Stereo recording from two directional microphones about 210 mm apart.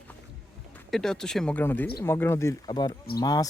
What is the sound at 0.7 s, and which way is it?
Speech, 5° left (ahead or behind).